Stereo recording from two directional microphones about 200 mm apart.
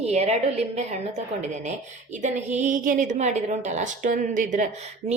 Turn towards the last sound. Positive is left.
turn(degrees=-35)  # may be behind; listen again after turning